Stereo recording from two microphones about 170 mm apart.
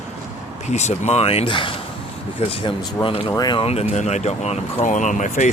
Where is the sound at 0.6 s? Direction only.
40° left (ahead or behind).